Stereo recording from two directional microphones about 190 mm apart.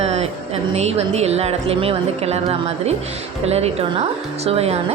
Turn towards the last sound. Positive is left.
turn(degrees=-35)  # may be behind; listen again after turning